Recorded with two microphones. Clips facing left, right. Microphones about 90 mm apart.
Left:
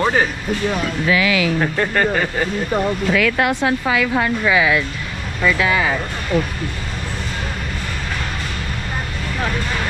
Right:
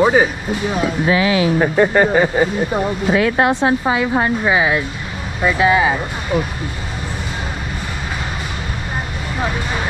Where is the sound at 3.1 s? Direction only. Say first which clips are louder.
Right 5 dB; 30° right (ahead or behind).